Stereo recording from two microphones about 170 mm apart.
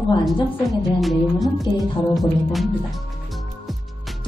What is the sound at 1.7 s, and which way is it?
Music, 30° left (ahead or behind).